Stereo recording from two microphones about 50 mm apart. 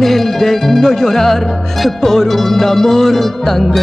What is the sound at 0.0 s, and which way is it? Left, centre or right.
Music, centre.